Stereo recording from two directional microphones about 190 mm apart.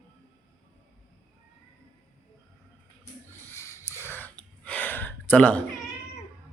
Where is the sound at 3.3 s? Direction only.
15° left (ahead or behind).